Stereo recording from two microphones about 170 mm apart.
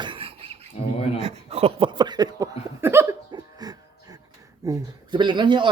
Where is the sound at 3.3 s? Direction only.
20° right (ahead or behind).